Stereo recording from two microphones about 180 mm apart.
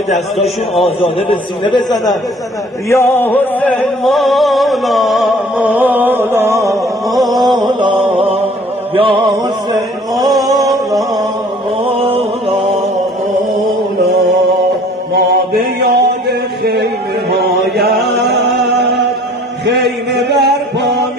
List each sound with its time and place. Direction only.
0.4 s a man's voice: centre (ahead or behind)
1.0 s a man's voice: 30° left (ahead or behind)
2.9 s music: 15° left (ahead or behind); by 6.8 s 15° right (ahead or behind)
7.1 s a sound: centre (ahead or behind)
7.6 s mantra: 25° right (ahead or behind)
8.9 s chant: 30° right (ahead or behind)
11.8 s mantra: 30° right (ahead or behind)
15.1 s mantra: 60° right (ahead or behind)
17.4 s chant: 65° right (ahead or behind)
18.1 s music: 65° right (ahead or behind)
19.6 s music: 75° right (ahead or behind)